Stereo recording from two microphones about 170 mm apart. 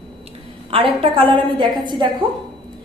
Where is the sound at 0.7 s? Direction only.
30° right (ahead or behind).